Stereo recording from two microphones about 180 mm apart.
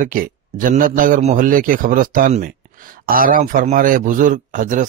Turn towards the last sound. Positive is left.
turn(degrees=-45)  # may be behind; listen again after turning